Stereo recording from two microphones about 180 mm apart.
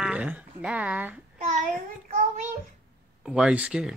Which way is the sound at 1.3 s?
45° right (ahead or behind).